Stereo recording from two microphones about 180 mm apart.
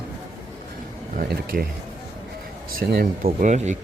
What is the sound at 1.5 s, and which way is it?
Speech, 50° right (ahead or behind).